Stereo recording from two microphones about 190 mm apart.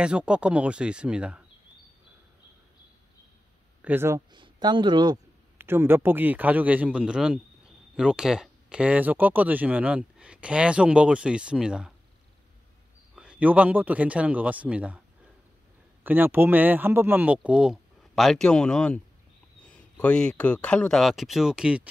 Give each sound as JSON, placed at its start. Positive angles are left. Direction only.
{"t": 0.0, "sound": "speech", "side_deg": -5}
{"t": 3.8, "sound": "speech", "side_deg": -10}
{"t": 4.3, "sound": "speech", "side_deg": -25}
{"t": 5.6, "sound": "speech", "side_deg": -10}
{"t": 13.1, "sound": "speech", "side_deg": -5}
{"t": 16.0, "sound": "speech", "side_deg": -10}